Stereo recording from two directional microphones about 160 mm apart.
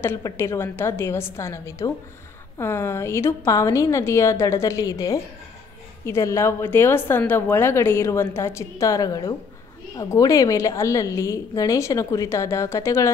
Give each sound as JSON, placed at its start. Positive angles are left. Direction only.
{"t": 0.0, "sound": "a woman's voice", "side_deg": 15}